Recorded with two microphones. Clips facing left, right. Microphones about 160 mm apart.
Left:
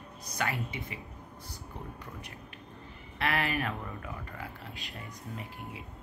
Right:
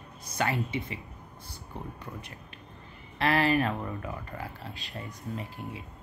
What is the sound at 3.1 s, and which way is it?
Speech, 35° right (ahead or behind).